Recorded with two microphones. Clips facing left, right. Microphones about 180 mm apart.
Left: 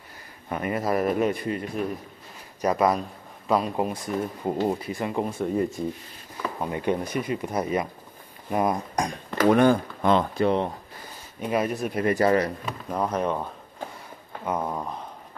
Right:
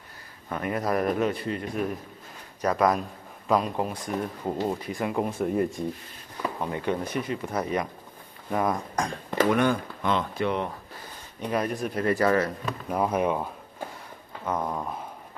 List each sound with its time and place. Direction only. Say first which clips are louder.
0.5 s speech: left 1 dB; 5° left (ahead or behind)
2.6 s speech: left 1 dB; 10° left (ahead or behind)
4.8 s speech: even; centre (ahead or behind)
6.6 s speech: left 3 dB; 15° left (ahead or behind)
9.5 s speech: left 8 dB; 35° left (ahead or behind)
11.4 s speech: left 2 dB; 5° left (ahead or behind); by 12.5 s 25° left (ahead or behind)
12.9 s speech: right 1 dB; 10° right (ahead or behind)
14.4 s speech: left 1 dB; 10° left (ahead or behind)